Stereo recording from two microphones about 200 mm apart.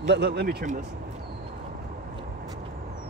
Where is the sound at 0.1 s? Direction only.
55° right (ahead or behind).